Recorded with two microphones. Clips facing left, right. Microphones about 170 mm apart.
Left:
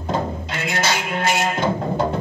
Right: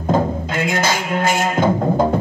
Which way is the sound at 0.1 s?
45° right (ahead or behind).